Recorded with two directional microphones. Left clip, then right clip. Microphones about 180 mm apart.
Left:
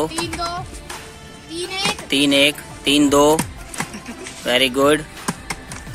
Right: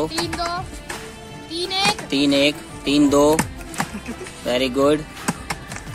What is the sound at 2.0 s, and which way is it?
Speech, centre (ahead or behind).